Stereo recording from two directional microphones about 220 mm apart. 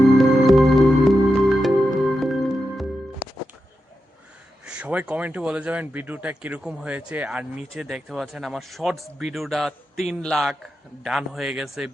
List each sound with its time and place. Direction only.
0.0 s music: centre (ahead or behind)
4.6 s speech: 5° right (ahead or behind)